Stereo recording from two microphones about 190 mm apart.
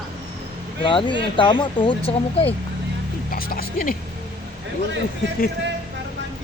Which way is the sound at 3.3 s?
50° left (ahead or behind).